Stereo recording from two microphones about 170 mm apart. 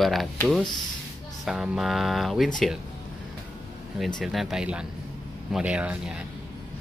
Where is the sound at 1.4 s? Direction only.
5° right (ahead or behind).